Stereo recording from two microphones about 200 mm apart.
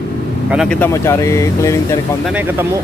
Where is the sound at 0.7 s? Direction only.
15° left (ahead or behind).